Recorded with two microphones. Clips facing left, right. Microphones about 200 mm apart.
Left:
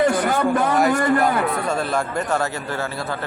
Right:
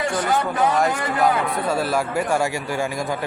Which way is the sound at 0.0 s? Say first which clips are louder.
Left 4 dB; 55° left (ahead or behind).